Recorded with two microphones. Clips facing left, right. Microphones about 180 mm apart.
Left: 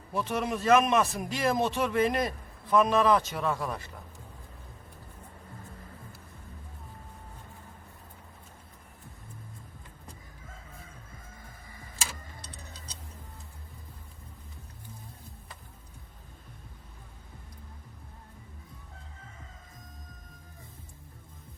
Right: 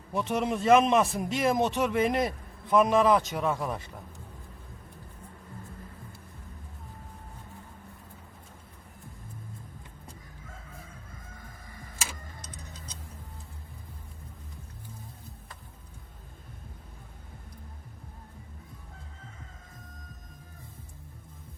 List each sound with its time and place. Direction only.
0.1 s a man's voice: 20° right (ahead or behind)